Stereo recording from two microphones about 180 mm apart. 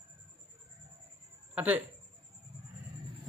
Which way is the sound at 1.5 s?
5° right (ahead or behind).